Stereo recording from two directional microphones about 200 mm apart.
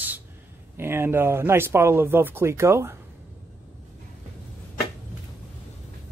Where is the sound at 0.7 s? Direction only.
10° right (ahead or behind).